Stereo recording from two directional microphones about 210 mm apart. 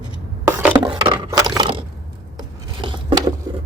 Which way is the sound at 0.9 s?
20° right (ahead or behind).